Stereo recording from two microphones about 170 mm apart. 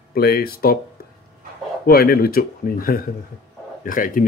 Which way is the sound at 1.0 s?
65° left (ahead or behind).